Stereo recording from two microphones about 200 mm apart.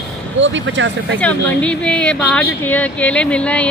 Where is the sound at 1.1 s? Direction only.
5° left (ahead or behind).